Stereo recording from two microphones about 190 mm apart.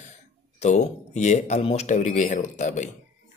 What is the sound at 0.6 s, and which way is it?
Speech, 35° left (ahead or behind).